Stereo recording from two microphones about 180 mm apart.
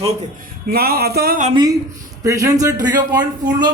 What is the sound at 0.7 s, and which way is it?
Speech, 60° right (ahead or behind).